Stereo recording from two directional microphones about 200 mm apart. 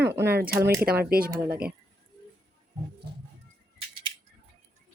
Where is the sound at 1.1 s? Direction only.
45° right (ahead or behind).